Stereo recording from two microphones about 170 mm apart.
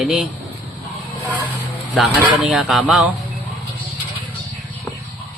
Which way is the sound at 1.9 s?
5° right (ahead or behind).